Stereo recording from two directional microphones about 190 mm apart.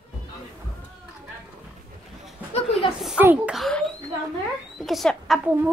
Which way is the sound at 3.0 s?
5° right (ahead or behind).